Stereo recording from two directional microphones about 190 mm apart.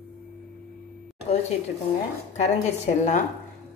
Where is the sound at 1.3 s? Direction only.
35° left (ahead or behind).